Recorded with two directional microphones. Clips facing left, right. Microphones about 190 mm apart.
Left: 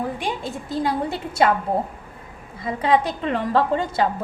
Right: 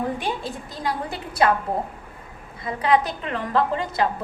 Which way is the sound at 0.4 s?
25° left (ahead or behind).